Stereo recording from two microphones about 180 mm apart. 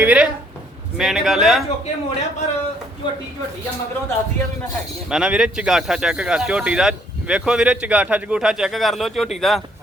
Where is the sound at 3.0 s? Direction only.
30° left (ahead or behind).